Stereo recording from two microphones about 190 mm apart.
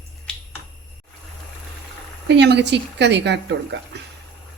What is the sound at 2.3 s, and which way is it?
A woman's voice, 65° right (ahead or behind).